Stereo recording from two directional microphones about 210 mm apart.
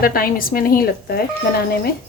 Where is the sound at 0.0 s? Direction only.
45° left (ahead or behind).